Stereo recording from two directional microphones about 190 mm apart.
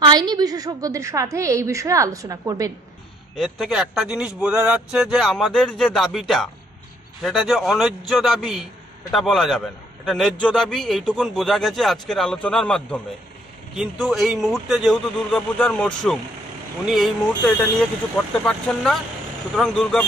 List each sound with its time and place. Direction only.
0.0 s a woman's voice: 20° right (ahead or behind)
3.3 s speech: centre (ahead or behind)